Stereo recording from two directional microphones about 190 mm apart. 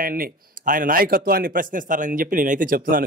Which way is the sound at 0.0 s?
50° right (ahead or behind).